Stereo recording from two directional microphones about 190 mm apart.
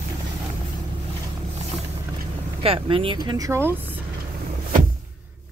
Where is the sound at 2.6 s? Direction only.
30° right (ahead or behind).